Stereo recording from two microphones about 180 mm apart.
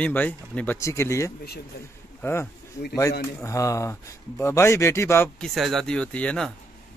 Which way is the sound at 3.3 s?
15° left (ahead or behind).